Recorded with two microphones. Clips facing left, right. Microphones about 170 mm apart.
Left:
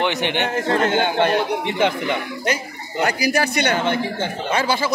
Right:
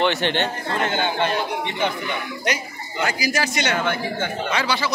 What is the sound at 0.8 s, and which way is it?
A man's voice, 55° left (ahead or behind).